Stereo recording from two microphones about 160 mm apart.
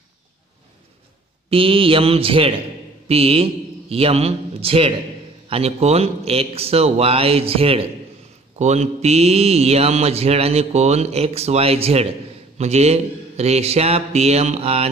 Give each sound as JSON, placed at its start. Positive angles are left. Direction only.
{"t": 1.5, "sound": "speech", "side_deg": -35}